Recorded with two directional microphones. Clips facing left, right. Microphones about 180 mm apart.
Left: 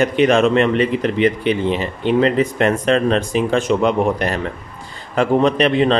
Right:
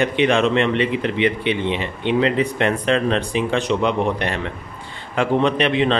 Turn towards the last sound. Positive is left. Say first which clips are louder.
# left 3 dB
turn(degrees=40)  # may be behind; listen again after turning